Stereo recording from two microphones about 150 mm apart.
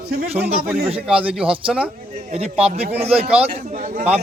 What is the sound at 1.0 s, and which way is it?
Speech, 10° right (ahead or behind).